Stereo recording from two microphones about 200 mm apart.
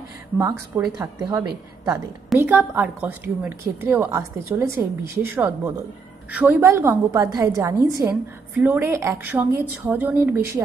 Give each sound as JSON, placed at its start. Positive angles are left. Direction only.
{"t": 0.4, "sound": "a woman's voice", "side_deg": -15}